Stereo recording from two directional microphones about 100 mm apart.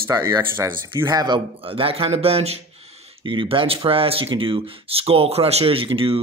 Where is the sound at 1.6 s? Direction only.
65° right (ahead or behind); by 2.6 s 85° right.